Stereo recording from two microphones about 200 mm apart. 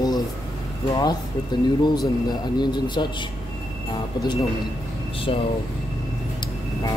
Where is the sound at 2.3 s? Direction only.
20° left (ahead or behind).